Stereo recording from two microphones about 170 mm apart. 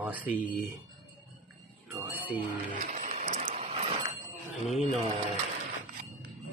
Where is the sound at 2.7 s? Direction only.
50° right (ahead or behind).